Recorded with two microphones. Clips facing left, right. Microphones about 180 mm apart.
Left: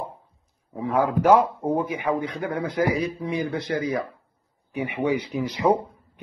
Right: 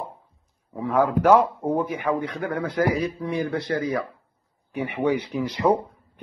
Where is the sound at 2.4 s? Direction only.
15° left (ahead or behind).